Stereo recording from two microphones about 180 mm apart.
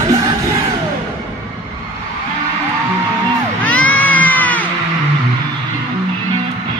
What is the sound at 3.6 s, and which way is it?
Crowd, 10° left (ahead or behind).